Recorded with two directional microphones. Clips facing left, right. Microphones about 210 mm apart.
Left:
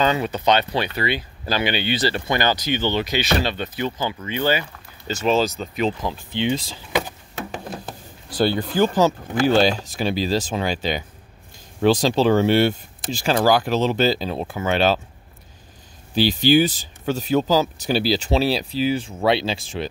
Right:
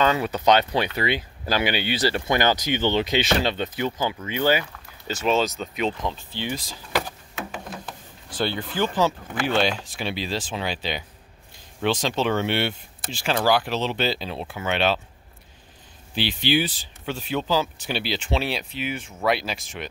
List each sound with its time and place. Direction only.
0.5 s speech: 15° right (ahead or behind)
5.1 s speech: centre (ahead or behind)
6.3 s speech: 25° left (ahead or behind)
7.7 s speech: 40° left (ahead or behind)
16.2 s speech: 40° left (ahead or behind)